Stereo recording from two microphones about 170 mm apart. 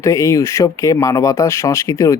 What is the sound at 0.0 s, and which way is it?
Speech, 15° left (ahead or behind).